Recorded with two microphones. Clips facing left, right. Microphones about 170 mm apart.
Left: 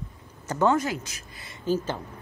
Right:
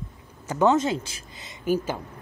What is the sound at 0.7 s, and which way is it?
A woman's voice, 25° right (ahead or behind).